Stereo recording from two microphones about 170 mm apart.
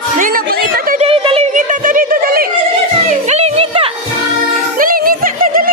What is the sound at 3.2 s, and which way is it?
Music, 40° right (ahead or behind).